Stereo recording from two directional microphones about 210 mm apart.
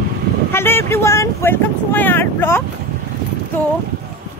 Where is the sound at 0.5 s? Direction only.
10° left (ahead or behind).